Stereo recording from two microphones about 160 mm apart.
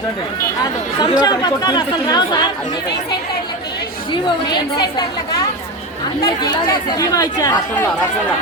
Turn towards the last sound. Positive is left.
turn(degrees=20)  # may be behind; listen again after turning